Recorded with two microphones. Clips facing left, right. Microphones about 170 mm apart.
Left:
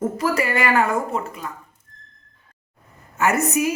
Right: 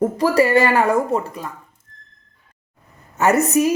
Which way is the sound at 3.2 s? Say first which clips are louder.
Right 4 dB; 35° right (ahead or behind).